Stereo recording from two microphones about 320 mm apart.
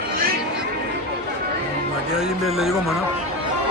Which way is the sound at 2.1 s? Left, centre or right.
Centre.